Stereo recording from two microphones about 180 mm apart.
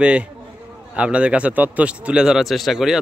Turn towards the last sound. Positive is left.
turn(degrees=0)  # may be behind; listen again after turning